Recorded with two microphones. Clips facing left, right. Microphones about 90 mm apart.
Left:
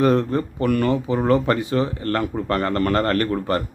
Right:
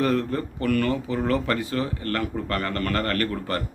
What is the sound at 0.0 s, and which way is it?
Speech, 25° left (ahead or behind).